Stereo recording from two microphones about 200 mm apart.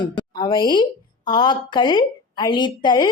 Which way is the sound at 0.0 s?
25° left (ahead or behind).